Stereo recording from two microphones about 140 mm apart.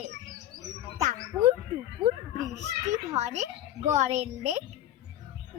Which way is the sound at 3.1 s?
55° right (ahead or behind).